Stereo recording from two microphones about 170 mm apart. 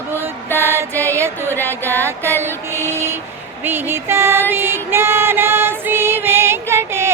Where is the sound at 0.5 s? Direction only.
15° right (ahead or behind).